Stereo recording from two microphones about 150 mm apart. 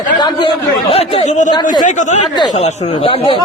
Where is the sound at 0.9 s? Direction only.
40° left (ahead or behind).